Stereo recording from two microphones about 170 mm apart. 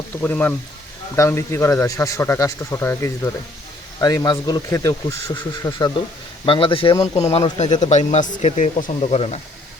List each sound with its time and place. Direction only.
0.2 s a man's voice: 10° left (ahead or behind)
6.4 s a man's voice: 30° left (ahead or behind)